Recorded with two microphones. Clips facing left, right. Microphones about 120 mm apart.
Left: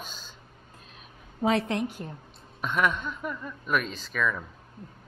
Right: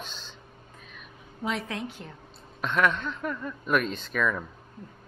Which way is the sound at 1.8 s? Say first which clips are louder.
Left 5 dB; 50° left (ahead or behind).